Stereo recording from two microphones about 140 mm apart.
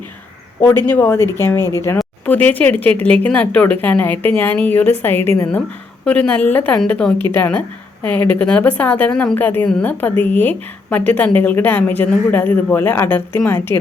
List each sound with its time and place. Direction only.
0.9 s a woman's voice: 15° left (ahead or behind)
1.5 s speech: 25° right (ahead or behind)
2.2 s a woman's voice: 10° left (ahead or behind)